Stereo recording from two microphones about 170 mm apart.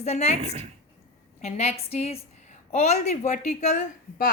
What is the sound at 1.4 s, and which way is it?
A woman's voice, 40° left (ahead or behind).